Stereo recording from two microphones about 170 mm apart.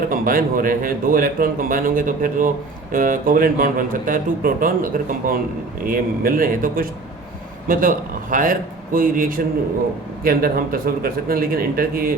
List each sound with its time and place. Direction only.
0.1 s speech: 55° right (ahead or behind)